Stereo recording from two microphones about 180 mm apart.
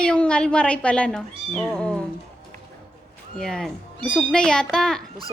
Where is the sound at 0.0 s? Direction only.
5° left (ahead or behind).